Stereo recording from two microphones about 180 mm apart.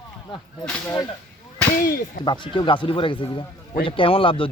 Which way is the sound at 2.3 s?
25° left (ahead or behind).